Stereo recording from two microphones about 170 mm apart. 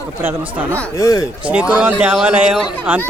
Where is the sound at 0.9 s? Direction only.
20° left (ahead or behind).